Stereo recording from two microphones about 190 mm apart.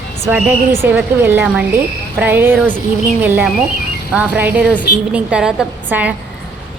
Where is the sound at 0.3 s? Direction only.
10° right (ahead or behind).